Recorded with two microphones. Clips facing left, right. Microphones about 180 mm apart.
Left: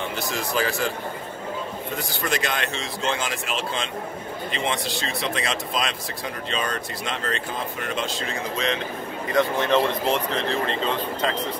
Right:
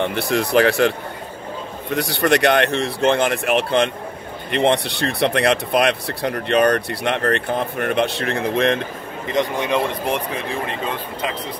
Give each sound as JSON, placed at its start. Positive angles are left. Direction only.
{"t": 0.0, "sound": "speech", "side_deg": -60}
{"t": 9.3, "sound": "speech", "side_deg": -15}